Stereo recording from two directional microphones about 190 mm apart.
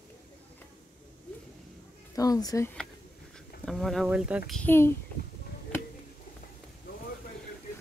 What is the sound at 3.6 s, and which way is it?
Speech, centre (ahead or behind).